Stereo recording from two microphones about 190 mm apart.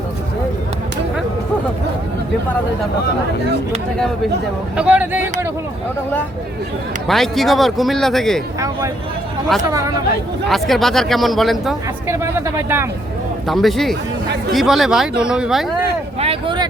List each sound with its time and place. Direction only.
4.8 s speech: 10° right (ahead or behind)
7.1 s a man's voice: centre (ahead or behind)
9.6 s speech: 15° right (ahead or behind)
10.5 s a man's voice: centre (ahead or behind)
12.0 s speech: 15° right (ahead or behind)
13.5 s a man's voice: centre (ahead or behind)
16.2 s speech: 25° right (ahead or behind)